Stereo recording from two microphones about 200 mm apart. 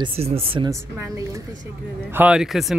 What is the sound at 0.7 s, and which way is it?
A woman's voice, 15° right (ahead or behind).